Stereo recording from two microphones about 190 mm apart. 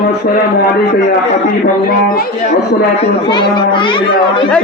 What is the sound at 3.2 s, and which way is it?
A child's voice, 25° left (ahead or behind).